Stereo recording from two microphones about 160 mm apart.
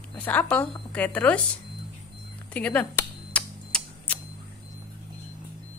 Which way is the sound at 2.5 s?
10° left (ahead or behind).